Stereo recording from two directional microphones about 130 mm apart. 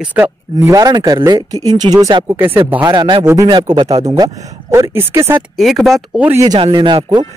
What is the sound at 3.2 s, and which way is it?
Speech, 30° right (ahead or behind).